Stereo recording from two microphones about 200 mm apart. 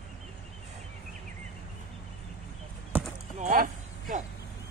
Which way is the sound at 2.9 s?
10° right (ahead or behind).